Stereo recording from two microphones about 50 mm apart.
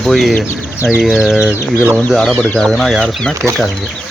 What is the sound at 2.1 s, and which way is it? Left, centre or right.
Speech, centre.